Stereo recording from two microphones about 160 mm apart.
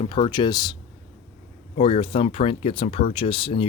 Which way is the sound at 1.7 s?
35° left (ahead or behind).